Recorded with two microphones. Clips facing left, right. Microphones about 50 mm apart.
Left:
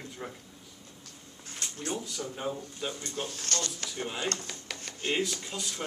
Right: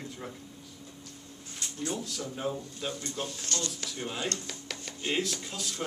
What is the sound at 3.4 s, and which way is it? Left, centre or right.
Speech, left.